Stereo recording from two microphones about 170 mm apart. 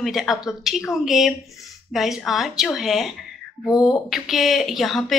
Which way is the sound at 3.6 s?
20° left (ahead or behind).